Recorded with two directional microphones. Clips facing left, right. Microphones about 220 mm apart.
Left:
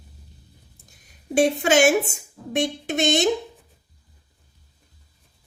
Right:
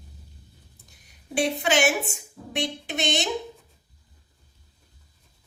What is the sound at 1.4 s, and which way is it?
A woman's voice, 45° left (ahead or behind).